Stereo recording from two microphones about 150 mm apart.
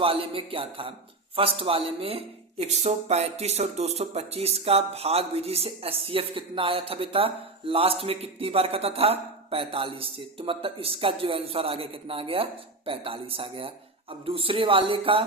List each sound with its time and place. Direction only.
0.0 s speech: 35° right (ahead or behind)